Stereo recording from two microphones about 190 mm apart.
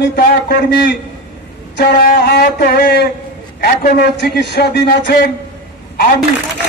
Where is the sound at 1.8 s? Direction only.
50° left (ahead or behind).